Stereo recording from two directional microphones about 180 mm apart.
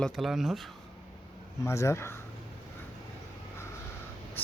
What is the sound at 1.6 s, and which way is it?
Speech, 15° left (ahead or behind).